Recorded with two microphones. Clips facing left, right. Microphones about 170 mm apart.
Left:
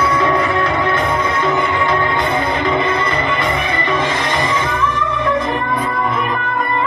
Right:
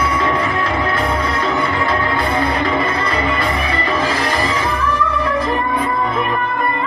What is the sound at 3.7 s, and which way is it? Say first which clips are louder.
Music: even; 35° right (ahead or behind).